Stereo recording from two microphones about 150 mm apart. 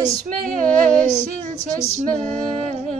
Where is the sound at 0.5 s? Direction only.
55° right (ahead or behind).